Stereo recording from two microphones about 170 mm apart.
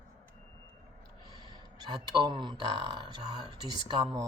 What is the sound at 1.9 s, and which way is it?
Speech, 25° right (ahead or behind).